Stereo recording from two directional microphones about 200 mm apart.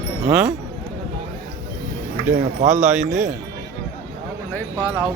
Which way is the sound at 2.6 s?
35° right (ahead or behind).